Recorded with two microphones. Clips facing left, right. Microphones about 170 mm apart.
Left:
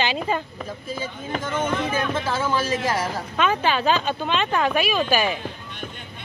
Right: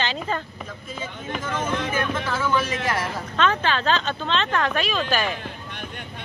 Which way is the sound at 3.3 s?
10° left (ahead or behind).